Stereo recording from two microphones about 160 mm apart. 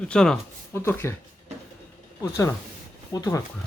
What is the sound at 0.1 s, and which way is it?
Speech, 5° left (ahead or behind).